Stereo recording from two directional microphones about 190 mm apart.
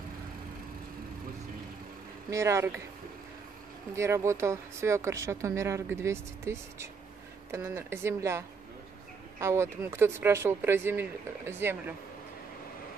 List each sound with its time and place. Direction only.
2.3 s speech: 15° right (ahead or behind)
3.9 s speech: 15° right (ahead or behind)